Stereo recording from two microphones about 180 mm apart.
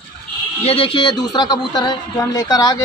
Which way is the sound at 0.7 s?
30° left (ahead or behind).